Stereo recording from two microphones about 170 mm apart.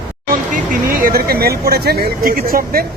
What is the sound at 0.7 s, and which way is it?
Speech, 55° right (ahead or behind).